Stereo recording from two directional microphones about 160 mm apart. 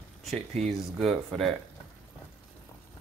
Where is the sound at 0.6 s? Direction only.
Centre (ahead or behind).